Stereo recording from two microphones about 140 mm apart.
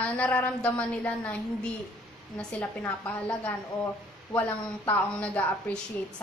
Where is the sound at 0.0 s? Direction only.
10° left (ahead or behind).